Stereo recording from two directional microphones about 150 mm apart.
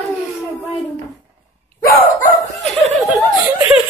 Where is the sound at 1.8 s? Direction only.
80° left.